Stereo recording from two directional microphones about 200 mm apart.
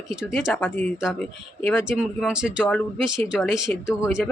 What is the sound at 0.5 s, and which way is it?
Speech, 10° left (ahead or behind).